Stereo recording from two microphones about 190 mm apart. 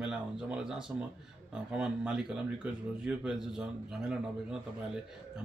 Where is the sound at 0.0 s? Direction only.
5° right (ahead or behind).